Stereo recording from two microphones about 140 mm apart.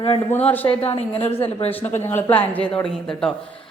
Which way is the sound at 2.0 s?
15° left (ahead or behind).